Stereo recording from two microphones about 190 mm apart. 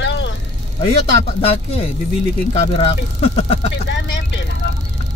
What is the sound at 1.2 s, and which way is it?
Speech, 30° left (ahead or behind).